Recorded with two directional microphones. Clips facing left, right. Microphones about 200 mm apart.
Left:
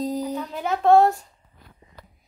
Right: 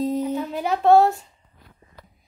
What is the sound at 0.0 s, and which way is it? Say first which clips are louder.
Music: right 3 dB; centre (ahead or behind).